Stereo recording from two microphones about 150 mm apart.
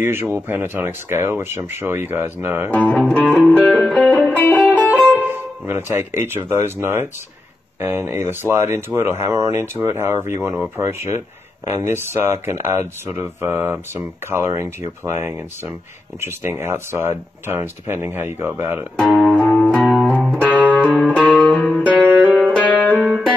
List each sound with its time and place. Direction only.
0.0 s speech: 15° right (ahead or behind)
2.7 s music: 10° left (ahead or behind)
5.1 s speech: 15° right (ahead or behind)
18.9 s music: centre (ahead or behind)
21.1 s music: 10° left (ahead or behind)
21.8 s music: 10° right (ahead or behind)
22.6 s music: 10° left (ahead or behind)